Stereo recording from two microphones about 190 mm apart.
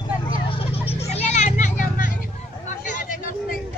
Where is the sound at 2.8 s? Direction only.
40° left (ahead or behind).